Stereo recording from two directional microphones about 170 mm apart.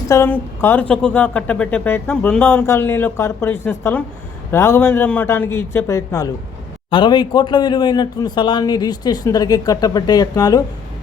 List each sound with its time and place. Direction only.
0.1 s a woman's voice: 15° left (ahead or behind)